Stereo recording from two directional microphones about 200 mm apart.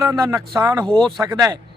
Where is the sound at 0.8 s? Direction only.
5° left (ahead or behind).